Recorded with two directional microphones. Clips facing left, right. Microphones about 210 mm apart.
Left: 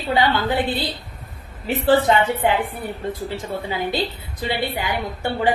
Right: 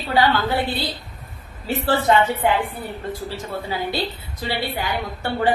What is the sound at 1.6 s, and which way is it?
A woman's voice, 15° left (ahead or behind).